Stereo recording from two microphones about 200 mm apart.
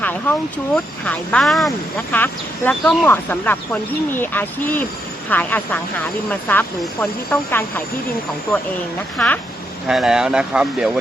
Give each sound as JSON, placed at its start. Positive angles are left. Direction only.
{"t": 0.0, "sound": "a sound", "side_deg": 10}
{"t": 1.0, "sound": "speech", "side_deg": 5}
{"t": 9.1, "sound": "speech", "side_deg": 5}